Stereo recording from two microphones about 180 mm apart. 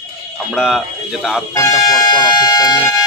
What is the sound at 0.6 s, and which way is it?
Speech, centre (ahead or behind).